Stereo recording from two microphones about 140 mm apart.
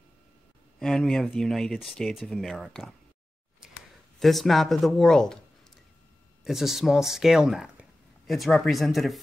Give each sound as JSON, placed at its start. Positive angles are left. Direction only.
{"t": 0.7, "sound": "speech", "side_deg": 5}
{"t": 4.2, "sound": "speech", "side_deg": 0}
{"t": 6.4, "sound": "speech", "side_deg": 0}